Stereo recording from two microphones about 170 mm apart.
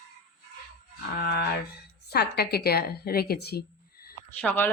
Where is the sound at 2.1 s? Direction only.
70° left (ahead or behind).